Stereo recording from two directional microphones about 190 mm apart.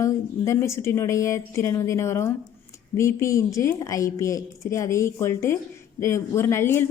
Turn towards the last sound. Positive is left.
turn(degrees=15)  # may be behind; listen again after turning